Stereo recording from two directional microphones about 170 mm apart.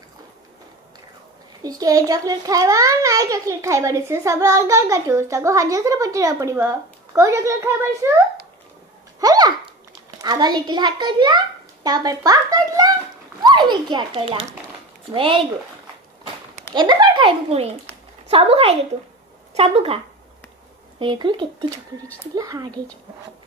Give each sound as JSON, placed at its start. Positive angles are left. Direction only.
{"t": 1.6, "sound": "a child's voice", "side_deg": -20}
{"t": 9.2, "sound": "a sound", "side_deg": -25}
{"t": 10.2, "sound": "a child's voice", "side_deg": -25}
{"t": 16.7, "sound": "a child's voice", "side_deg": -25}
{"t": 21.0, "sound": "a child's voice", "side_deg": -30}
{"t": 22.0, "sound": "speech", "side_deg": 10}
{"t": 22.3, "sound": "a child's voice", "side_deg": -20}